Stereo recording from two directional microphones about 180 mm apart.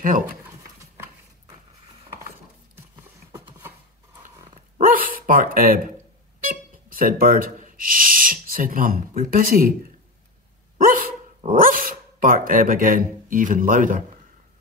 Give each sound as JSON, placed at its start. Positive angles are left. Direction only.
{"t": 2.7, "sound": "a sound", "side_deg": -15}
{"t": 4.4, "sound": "dog", "side_deg": -30}
{"t": 4.8, "sound": "speech", "side_deg": -50}
{"t": 10.9, "sound": "dog", "side_deg": -50}